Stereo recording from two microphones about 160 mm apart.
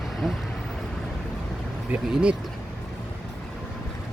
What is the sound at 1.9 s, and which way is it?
Speech, 5° right (ahead or behind).